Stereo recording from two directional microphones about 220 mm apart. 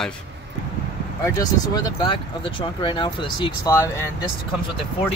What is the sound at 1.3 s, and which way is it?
Speech, 15° left (ahead or behind).